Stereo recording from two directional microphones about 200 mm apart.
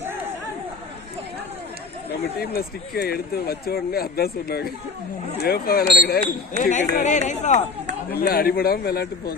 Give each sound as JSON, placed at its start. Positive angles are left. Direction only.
{"t": 2.4, "sound": "speech", "side_deg": 50}
{"t": 8.1, "sound": "speech", "side_deg": 50}